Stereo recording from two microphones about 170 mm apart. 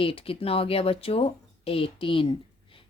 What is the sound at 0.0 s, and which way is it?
Speech, 35° left (ahead or behind).